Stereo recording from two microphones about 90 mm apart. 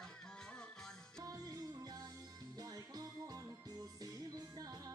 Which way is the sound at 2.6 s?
45° right (ahead or behind).